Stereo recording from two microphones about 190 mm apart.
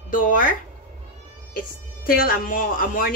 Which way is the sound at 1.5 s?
50° left (ahead or behind).